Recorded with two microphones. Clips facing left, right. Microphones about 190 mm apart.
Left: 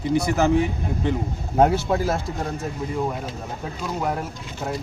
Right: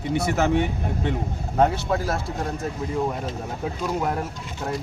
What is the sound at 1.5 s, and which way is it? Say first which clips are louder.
Speech: left 3 dB; 20° left (ahead or behind).